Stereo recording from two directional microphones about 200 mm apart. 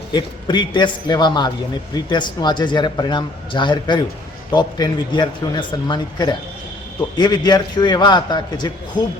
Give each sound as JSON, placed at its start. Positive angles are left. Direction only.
{"t": 0.1, "sound": "a man's voice", "side_deg": 20}